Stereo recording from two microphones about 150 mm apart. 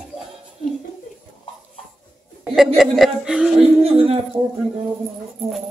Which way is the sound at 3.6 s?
40° right (ahead or behind).